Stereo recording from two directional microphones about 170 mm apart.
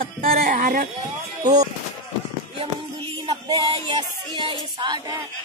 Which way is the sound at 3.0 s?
25° right (ahead or behind).